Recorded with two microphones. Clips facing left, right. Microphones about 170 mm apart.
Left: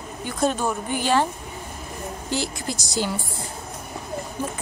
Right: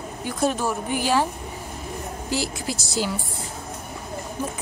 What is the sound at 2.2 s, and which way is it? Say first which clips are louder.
Speech: right 1 dB; 5° right (ahead or behind).